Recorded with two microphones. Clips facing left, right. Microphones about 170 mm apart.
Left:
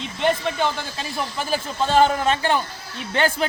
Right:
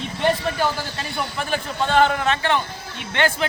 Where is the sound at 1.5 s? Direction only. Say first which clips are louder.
Left 1 dB; 35° left (ahead or behind).